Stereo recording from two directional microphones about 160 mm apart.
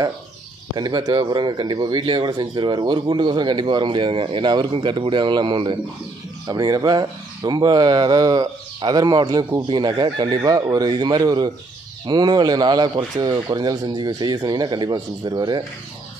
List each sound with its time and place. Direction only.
0.7 s speech: 25° right (ahead or behind)